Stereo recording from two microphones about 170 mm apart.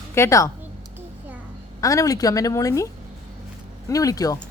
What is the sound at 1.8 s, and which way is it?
Speech, 20° left (ahead or behind).